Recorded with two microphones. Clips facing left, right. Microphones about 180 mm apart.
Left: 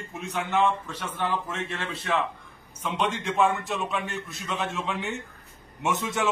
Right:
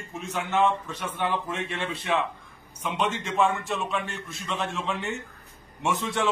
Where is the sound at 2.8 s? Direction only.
10° right (ahead or behind).